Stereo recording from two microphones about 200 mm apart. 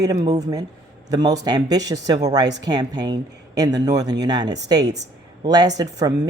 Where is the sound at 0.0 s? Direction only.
20° right (ahead or behind).